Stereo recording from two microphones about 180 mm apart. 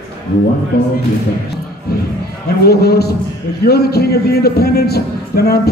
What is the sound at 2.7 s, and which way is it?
A man's voice, 60° left (ahead or behind).